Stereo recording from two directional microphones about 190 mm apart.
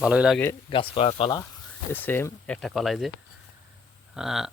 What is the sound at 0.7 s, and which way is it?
Speech, 30° left (ahead or behind).